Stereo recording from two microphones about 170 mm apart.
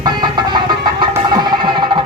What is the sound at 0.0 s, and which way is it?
Music, 25° right (ahead or behind).